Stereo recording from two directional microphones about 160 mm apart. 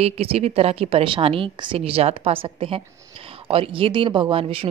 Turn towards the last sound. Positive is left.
turn(degrees=-35)  # may be behind; listen again after turning